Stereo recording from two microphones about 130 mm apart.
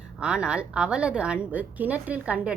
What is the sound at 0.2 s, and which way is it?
A woman's voice, 10° right (ahead or behind).